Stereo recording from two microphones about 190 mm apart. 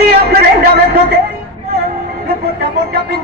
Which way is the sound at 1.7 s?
55° right (ahead or behind).